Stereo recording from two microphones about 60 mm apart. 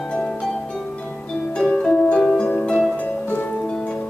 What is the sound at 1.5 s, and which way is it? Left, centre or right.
Music, centre.